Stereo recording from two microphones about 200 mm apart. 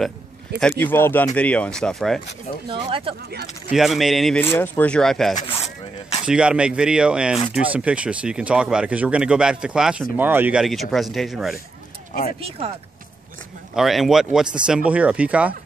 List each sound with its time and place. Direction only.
0.6 s speech: 5° left (ahead or behind)
2.7 s speech: 25° right (ahead or behind)
3.7 s speech: centre (ahead or behind)
12.4 s speech: 30° right (ahead or behind)
13.7 s speech: centre (ahead or behind)